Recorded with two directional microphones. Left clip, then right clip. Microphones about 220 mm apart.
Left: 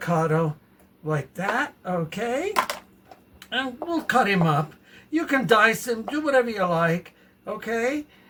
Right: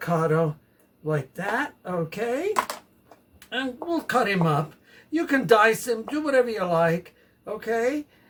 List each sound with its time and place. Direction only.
0.0 s speech: 25° right (ahead or behind)
3.5 s speech: 15° right (ahead or behind)